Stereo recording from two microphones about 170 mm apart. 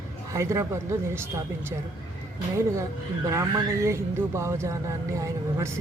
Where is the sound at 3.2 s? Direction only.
20° right (ahead or behind).